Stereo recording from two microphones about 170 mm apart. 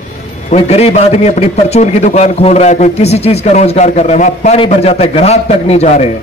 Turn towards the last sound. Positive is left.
turn(degrees=40)  # may be behind; listen again after turning